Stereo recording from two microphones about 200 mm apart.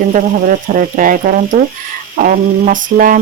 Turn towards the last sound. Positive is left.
turn(degrees=-45)  # may be behind; listen again after turning